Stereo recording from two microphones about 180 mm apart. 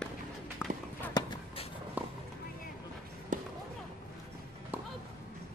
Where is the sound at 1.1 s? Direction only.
30° left (ahead or behind).